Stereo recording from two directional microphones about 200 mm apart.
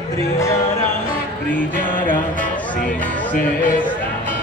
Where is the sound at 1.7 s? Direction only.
40° left (ahead or behind).